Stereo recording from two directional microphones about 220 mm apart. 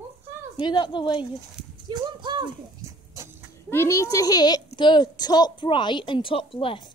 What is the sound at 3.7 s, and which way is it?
A child's voice, 10° left (ahead or behind).